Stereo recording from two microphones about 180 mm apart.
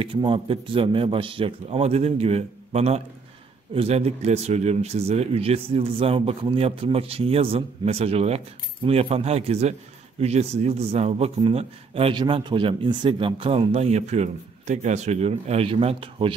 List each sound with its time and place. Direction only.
0.0 s a man's voice: 30° right (ahead or behind)